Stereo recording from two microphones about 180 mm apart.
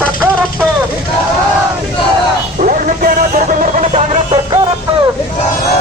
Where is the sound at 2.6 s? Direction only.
45° right (ahead or behind).